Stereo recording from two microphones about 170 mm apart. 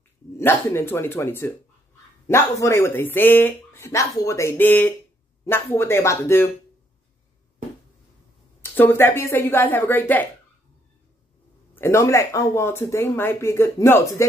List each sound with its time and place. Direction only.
0.4 s speech: 15° left (ahead or behind)
8.7 s speech: 10° left (ahead or behind)
11.7 s speech: 15° left (ahead or behind)